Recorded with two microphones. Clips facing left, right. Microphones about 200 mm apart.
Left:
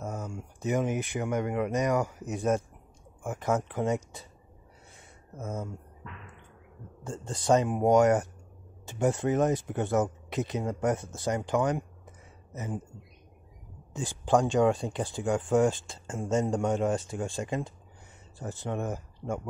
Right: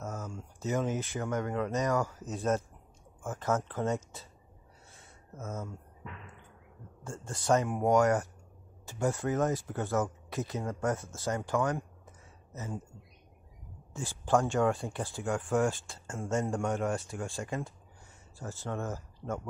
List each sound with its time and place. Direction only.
0.0 s speech: 15° left (ahead or behind)
4.9 s a sound: 15° left (ahead or behind)
7.0 s speech: 20° left (ahead or behind)
13.9 s speech: 15° left (ahead or behind)